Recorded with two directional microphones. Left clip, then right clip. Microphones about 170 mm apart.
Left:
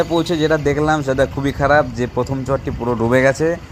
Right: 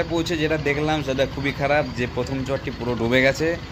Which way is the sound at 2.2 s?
30° left (ahead or behind).